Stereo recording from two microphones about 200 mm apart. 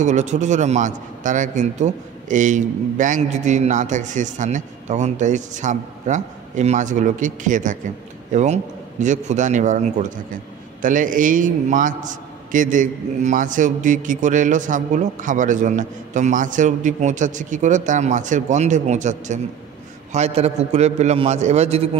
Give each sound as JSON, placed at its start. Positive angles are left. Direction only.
{"t": 0.0, "sound": "a man's voice", "side_deg": -35}